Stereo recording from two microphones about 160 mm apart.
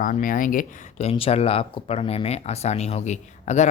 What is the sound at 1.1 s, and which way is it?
Speech, 40° left (ahead or behind).